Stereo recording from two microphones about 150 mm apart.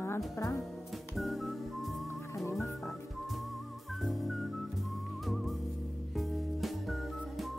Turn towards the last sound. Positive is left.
turn(degrees=0)  # may be behind; listen again after turning